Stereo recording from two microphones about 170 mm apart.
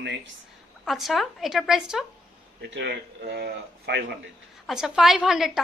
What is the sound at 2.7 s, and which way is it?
Speech, 75° right (ahead or behind).